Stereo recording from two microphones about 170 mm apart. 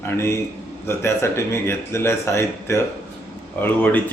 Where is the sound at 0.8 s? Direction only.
15° left (ahead or behind).